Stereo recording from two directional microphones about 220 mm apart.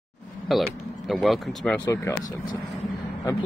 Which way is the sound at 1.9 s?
15° left (ahead or behind).